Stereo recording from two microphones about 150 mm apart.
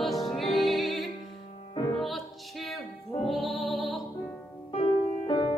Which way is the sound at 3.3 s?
Centre (ahead or behind).